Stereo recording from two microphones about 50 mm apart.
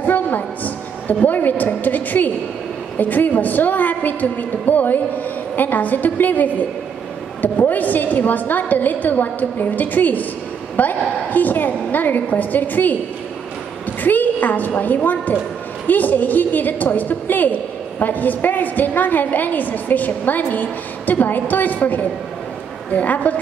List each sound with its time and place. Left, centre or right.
0.0 s a sound: left
1.0 s a woman's voice: left
14.0 s a woman's voice: left